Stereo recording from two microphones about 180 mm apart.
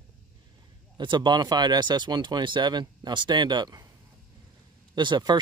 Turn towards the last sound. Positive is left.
turn(degrees=-25)  # may be behind; listen again after turning